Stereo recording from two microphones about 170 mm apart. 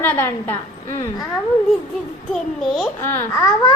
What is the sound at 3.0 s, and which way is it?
Speech, 15° left (ahead or behind).